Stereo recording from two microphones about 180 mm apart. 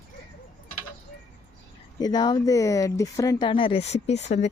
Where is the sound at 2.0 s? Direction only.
20° left (ahead or behind).